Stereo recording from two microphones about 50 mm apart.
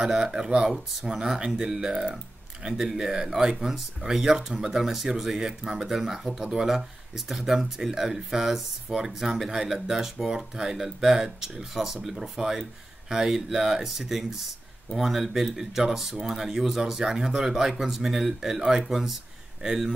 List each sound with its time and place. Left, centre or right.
0.0 s speech: centre